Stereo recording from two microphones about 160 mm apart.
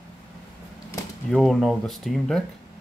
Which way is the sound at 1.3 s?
Centre (ahead or behind).